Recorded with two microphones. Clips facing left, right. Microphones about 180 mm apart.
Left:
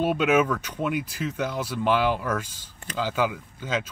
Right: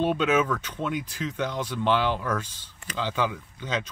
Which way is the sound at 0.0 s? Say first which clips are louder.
Left 2 dB; 10° left (ahead or behind).